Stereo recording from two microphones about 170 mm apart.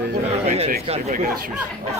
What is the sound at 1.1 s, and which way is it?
Speech, 55° right (ahead or behind).